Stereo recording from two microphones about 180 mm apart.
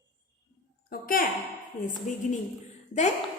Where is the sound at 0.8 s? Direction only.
50° left (ahead or behind).